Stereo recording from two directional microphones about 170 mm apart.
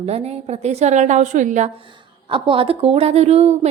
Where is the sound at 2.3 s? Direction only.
30° right (ahead or behind).